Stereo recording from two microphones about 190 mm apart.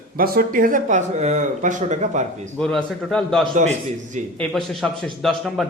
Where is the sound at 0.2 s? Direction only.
50° right (ahead or behind).